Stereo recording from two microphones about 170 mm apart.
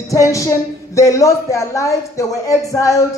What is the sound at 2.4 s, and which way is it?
Music, 20° left (ahead or behind).